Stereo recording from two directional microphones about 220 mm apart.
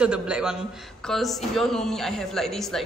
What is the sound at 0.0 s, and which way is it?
A woman's voice, 5° right (ahead or behind).